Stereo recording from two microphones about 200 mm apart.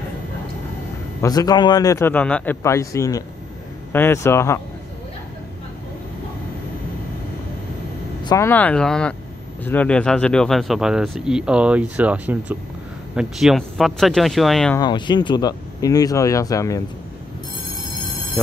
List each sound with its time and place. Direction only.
1.2 s a man's voice: 20° left (ahead or behind)
8.2 s a man's voice: 15° left (ahead or behind); by 14.8 s centre (ahead or behind)
14.8 s speech: 20° left (ahead or behind)